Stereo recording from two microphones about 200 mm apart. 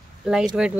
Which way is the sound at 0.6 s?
5° right (ahead or behind).